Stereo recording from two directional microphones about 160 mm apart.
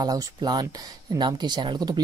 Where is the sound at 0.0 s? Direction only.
25° right (ahead or behind).